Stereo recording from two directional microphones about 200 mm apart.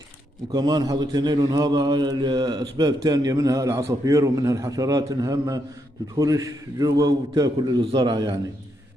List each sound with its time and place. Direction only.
0.5 s a man's voice: 20° right (ahead or behind)